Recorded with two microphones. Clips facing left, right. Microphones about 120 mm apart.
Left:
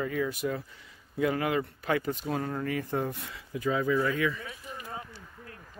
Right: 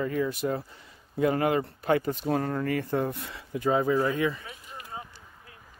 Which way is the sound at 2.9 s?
35° right (ahead or behind).